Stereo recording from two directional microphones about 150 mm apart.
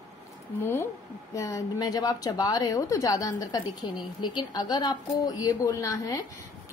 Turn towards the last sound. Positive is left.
turn(degrees=25)  # may be behind; listen again after turning